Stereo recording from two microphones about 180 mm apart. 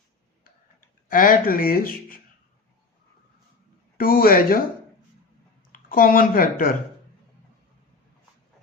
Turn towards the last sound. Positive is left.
turn(degrees=50)  # may be behind; listen again after turning